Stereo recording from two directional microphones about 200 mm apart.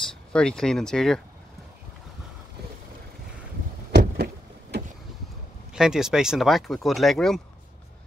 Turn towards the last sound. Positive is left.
turn(degrees=0)  # may be behind; listen again after turning